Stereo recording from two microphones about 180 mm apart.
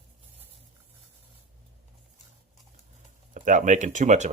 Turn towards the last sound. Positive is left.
turn(degrees=-40)  # may be behind; listen again after turning